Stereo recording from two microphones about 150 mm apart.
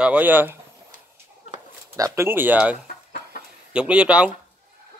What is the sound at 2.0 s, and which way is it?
Speech, 20° right (ahead or behind).